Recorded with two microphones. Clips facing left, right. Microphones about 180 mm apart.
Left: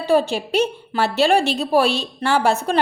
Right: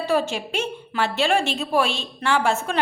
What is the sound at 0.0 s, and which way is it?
A woman's voice, 30° left (ahead or behind).